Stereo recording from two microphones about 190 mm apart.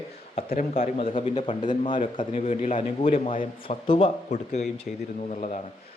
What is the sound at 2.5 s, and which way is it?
Speech, 40° left (ahead or behind).